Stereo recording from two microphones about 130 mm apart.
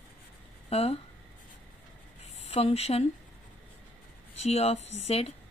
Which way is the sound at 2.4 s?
55° left (ahead or behind).